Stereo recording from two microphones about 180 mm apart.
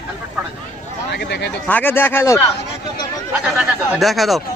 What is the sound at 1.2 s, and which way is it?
Speech, 70° left (ahead or behind).